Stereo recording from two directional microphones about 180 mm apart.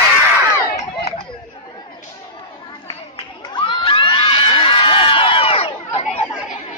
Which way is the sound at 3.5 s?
30° left (ahead or behind).